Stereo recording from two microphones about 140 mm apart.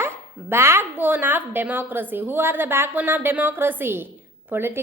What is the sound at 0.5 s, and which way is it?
A woman's voice, 20° right (ahead or behind).